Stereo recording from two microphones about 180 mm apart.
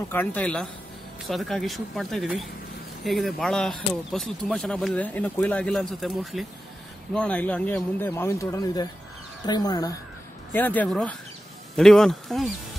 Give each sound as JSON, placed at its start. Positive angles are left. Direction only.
{"t": 0.1, "sound": "speech", "side_deg": 10}
{"t": 10.5, "sound": "speech", "side_deg": 10}